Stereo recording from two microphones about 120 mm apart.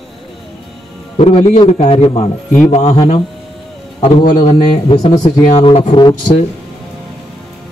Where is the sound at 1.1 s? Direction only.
55° left (ahead or behind).